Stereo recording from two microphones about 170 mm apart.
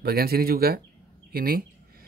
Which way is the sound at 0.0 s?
65° right (ahead or behind).